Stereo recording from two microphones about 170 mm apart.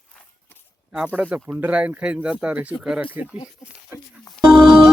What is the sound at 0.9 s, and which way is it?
Speech, 10° right (ahead or behind).